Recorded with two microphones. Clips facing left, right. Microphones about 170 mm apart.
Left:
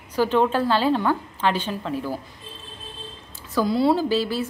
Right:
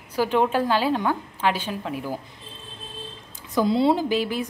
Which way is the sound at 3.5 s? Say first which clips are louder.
Even; 20° right (ahead or behind).